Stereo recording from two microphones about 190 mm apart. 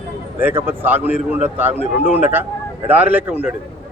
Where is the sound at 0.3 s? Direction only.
10° right (ahead or behind).